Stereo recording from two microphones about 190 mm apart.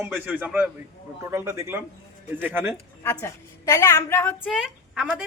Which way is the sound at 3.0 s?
15° left (ahead or behind).